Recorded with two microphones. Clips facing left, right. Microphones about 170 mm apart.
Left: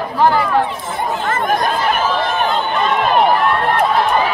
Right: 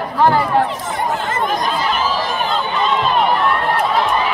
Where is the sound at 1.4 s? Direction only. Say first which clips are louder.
Left 3 dB; 50° left (ahead or behind).